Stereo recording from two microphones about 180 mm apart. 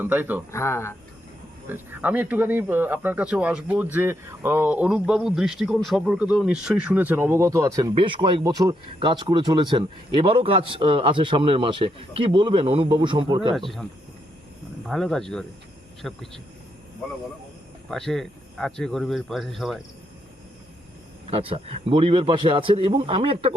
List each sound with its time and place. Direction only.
0.0 s speech: 10° right (ahead or behind)
0.5 s speech: 15° left (ahead or behind)
1.7 s a man's voice: 10° right (ahead or behind); by 13.6 s 25° right (ahead or behind)
13.6 s speech: centre (ahead or behind)
14.8 s speech: centre (ahead or behind)
17.8 s speech: centre (ahead or behind)
21.2 s a man's voice: 30° right (ahead or behind)